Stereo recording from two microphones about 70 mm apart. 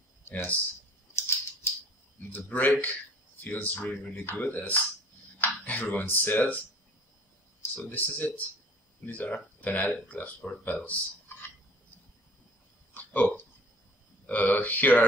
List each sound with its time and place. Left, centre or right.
0.2 s speech: left
1.1 s scissors: left
2.3 s speech: left
7.7 s speech: left
12.9 s hiccup: left
14.2 s speech: left